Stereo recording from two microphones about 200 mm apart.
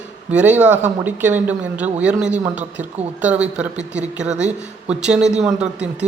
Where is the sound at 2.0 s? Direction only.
5° right (ahead or behind).